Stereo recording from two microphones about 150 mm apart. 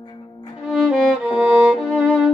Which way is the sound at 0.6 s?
Centre (ahead or behind).